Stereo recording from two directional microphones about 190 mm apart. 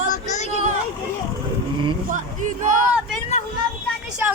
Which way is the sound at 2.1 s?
40° right (ahead or behind).